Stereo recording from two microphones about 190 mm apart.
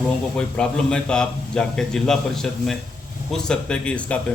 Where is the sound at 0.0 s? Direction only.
5° left (ahead or behind).